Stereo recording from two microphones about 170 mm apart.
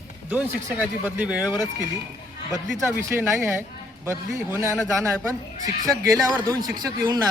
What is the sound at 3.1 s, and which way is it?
Speech, 15° right (ahead or behind).